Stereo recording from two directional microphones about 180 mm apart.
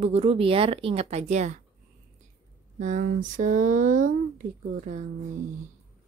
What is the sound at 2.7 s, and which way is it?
Speech, 45° right (ahead or behind).